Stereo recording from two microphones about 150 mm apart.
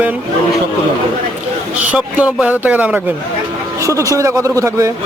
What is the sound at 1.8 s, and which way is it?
Speech, 10° right (ahead or behind).